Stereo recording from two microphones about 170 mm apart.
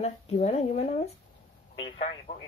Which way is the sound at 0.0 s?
40° left (ahead or behind).